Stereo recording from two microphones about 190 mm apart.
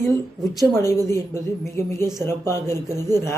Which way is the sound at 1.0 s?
15° left (ahead or behind).